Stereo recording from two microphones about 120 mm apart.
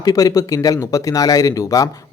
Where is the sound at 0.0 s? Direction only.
30° left (ahead or behind).